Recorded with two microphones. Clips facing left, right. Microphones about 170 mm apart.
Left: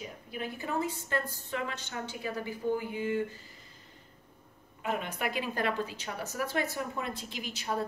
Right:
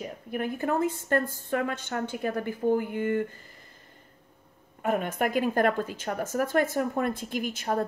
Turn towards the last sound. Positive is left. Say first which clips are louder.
# right 6 dB
turn(degrees=-50)  # may be behind; listen again after turning